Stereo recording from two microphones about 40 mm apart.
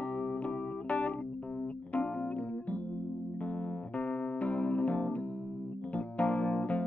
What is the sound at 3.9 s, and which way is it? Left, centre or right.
Electric piano, left.